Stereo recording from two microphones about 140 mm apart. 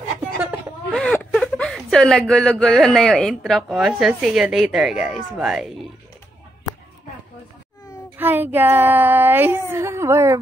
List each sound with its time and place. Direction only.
0.9 s speech: 10° left (ahead or behind)
8.2 s a woman's voice: 15° right (ahead or behind)